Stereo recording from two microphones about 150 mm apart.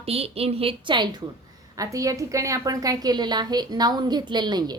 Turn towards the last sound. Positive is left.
turn(degrees=-30)  # may be behind; listen again after turning